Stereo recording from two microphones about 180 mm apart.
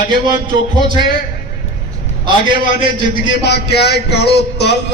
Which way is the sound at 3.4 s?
70° left (ahead or behind).